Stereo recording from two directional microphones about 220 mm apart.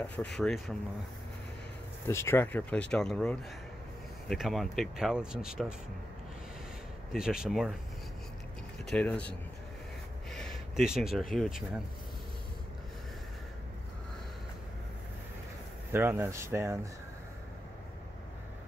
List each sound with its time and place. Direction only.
0.0 s speech: 5° left (ahead or behind)
2.0 s speech: 10° left (ahead or behind)
7.1 s speech: centre (ahead or behind)
8.8 s speech: 5° left (ahead or behind)
10.3 s speech: centre (ahead or behind)
15.9 s speech: 10° right (ahead or behind)